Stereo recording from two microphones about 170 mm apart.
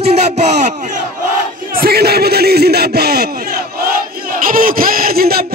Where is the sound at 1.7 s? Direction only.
65° right (ahead or behind).